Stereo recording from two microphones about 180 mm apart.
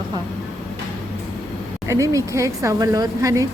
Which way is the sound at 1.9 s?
15° right (ahead or behind).